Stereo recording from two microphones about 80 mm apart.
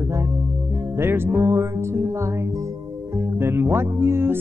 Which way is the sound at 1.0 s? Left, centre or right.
Right.